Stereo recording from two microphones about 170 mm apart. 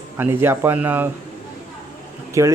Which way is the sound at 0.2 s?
15° right (ahead or behind).